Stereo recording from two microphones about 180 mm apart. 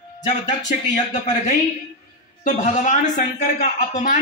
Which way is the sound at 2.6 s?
45° left (ahead or behind).